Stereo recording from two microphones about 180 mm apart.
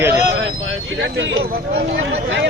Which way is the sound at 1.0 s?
90° right.